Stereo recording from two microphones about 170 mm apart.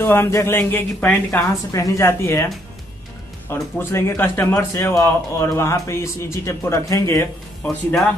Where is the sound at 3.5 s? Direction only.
15° left (ahead or behind).